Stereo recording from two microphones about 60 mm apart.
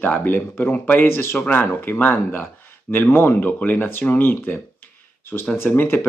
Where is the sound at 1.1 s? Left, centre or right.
Left.